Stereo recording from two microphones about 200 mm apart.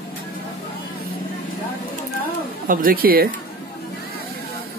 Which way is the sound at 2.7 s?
45° right (ahead or behind).